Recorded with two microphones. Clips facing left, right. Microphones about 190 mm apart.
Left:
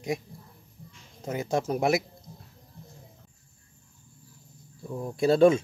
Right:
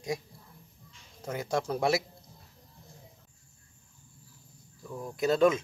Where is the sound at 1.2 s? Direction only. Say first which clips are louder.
Left 3 dB; 20° left (ahead or behind).